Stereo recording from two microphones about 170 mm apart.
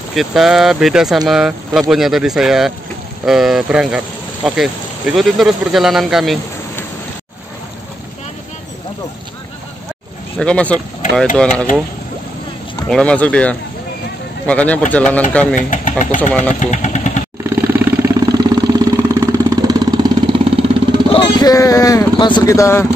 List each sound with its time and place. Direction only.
0.1 s speech: centre (ahead or behind)
10.4 s speech: 5° left (ahead or behind)
12.8 s speech: 5° left (ahead or behind)
15.7 s speech: 50° left (ahead or behind)
17.4 s vehicle: 15° right (ahead or behind); by 21.0 s 30° right (ahead or behind)
21.1 s a sound: 25° left (ahead or behind)